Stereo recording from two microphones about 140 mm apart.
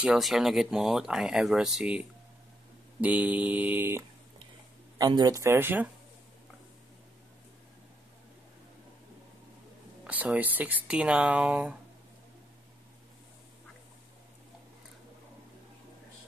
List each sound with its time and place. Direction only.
0.0 s speech: 5° right (ahead or behind)
4.9 s speech: 25° right (ahead or behind)
10.0 s speech: 10° right (ahead or behind)